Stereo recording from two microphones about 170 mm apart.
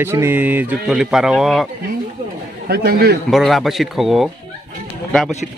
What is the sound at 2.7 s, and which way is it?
Speech, 65° right (ahead or behind).